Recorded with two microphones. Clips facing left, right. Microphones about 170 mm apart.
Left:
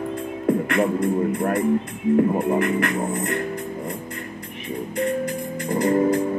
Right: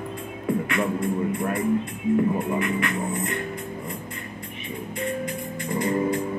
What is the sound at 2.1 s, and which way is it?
Music, 45° left (ahead or behind).